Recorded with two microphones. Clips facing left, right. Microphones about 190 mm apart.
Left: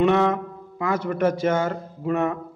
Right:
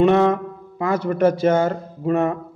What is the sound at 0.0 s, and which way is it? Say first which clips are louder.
A man's voice: right 4 dB; 35° right (ahead or behind).